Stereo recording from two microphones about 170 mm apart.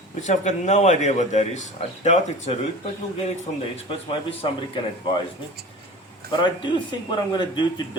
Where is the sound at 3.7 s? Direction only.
35° left (ahead or behind).